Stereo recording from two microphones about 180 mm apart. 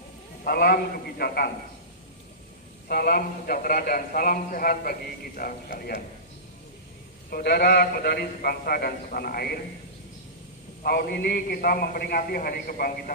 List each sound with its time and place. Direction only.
0.4 s a man's voice: 55° left (ahead or behind)
2.9 s a man's voice: 55° left (ahead or behind)
7.2 s a man's voice: 60° left (ahead or behind)
10.8 s a man's voice: 60° left (ahead or behind)